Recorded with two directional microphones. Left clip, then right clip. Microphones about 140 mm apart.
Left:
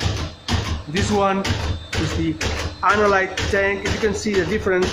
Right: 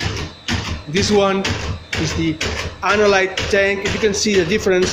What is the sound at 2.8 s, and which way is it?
Speech, 25° right (ahead or behind).